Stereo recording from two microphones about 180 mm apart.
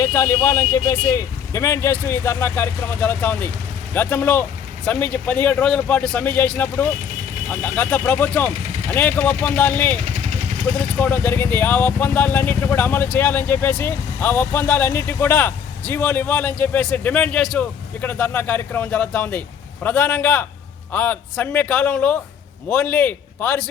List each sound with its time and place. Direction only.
0.0 s speech: 15° left (ahead or behind)
10.0 s vehicle: 40° right (ahead or behind)
10.7 s speech: 10° left (ahead or behind)